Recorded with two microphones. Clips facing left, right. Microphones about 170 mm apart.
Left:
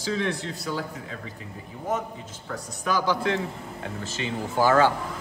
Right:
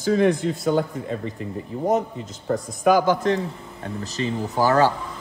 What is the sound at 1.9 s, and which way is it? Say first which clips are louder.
A man's voice: right 6 dB; 40° right (ahead or behind).